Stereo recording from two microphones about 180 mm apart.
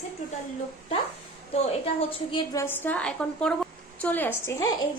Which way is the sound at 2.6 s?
10° left (ahead or behind).